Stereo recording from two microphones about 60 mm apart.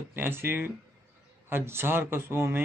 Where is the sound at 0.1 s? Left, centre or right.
Right.